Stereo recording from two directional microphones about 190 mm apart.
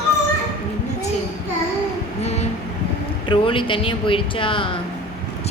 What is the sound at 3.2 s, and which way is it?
A woman's voice, 25° left (ahead or behind).